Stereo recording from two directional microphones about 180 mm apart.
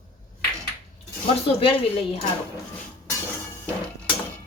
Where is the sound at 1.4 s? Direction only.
30° left (ahead or behind).